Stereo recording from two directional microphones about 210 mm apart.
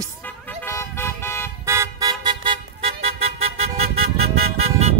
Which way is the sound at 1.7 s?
15° right (ahead or behind).